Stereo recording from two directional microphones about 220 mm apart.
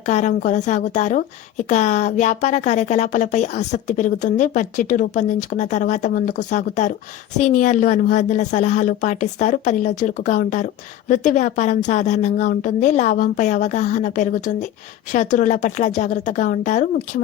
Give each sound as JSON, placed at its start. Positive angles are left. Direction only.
{"t": 0.0, "sound": "speech", "side_deg": 35}